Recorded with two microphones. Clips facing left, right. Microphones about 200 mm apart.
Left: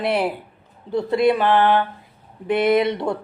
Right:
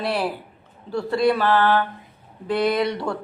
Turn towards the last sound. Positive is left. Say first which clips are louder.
# left 4 dB
turn(degrees=20)  # may be behind; listen again after turning